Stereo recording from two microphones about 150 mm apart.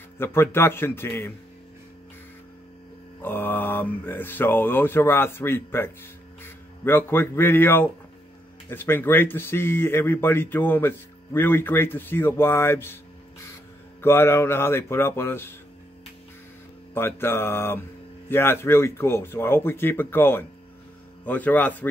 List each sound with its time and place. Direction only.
0.2 s speech: 15° left (ahead or behind)
3.2 s speech: 15° left (ahead or behind)
14.0 s speech: 15° left (ahead or behind)
16.9 s speech: 15° left (ahead or behind)